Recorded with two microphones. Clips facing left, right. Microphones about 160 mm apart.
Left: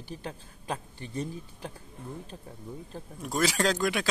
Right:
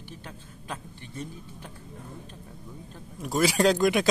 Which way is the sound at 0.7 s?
35° left (ahead or behind).